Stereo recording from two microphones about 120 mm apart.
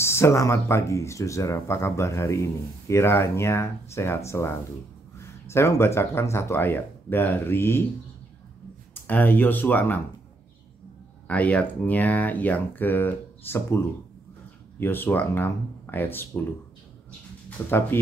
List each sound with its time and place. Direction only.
0.0 s speech: 20° left (ahead or behind)
8.9 s speech: 15° left (ahead or behind)
11.2 s speech: 10° left (ahead or behind)
14.8 s speech: 15° left (ahead or behind)
17.6 s speech: 20° left (ahead or behind)